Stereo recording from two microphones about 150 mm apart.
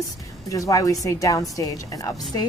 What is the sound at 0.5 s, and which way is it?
A woman's voice, 25° left (ahead or behind).